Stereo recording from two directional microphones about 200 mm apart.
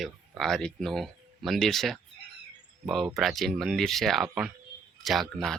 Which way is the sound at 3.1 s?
Centre (ahead or behind).